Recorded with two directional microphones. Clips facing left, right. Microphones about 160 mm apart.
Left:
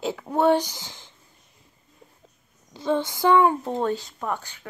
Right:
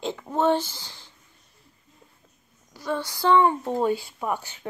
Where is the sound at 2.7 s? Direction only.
20° left (ahead or behind).